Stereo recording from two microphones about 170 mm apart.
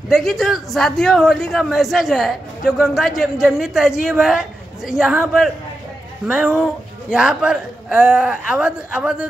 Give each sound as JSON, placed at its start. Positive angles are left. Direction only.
{"t": 0.1, "sound": "a man's voice", "side_deg": 0}
{"t": 6.2, "sound": "a man's voice", "side_deg": -5}